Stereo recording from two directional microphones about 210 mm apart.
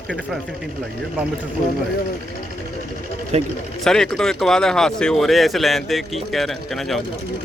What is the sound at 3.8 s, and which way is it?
Speech, 5° left (ahead or behind).